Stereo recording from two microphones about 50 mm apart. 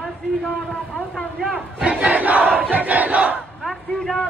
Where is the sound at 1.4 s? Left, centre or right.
Centre.